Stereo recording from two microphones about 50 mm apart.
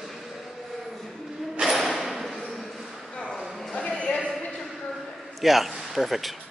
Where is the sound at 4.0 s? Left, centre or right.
Centre.